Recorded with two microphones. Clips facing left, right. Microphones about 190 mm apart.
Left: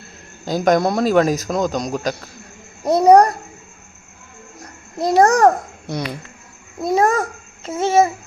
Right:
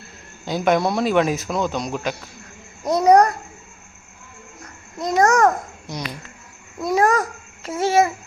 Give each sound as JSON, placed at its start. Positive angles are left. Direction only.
{"t": 0.4, "sound": "a man's voice", "side_deg": 40}
{"t": 2.8, "sound": "a man's voice", "side_deg": 30}
{"t": 4.6, "sound": "a child's voice", "side_deg": 35}
{"t": 5.9, "sound": "speech", "side_deg": 55}
{"t": 6.7, "sound": "a child's voice", "side_deg": 25}